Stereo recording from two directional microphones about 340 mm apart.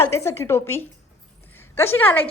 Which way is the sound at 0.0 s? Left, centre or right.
Centre.